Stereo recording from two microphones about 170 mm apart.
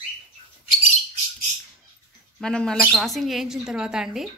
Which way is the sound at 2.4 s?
5° left (ahead or behind).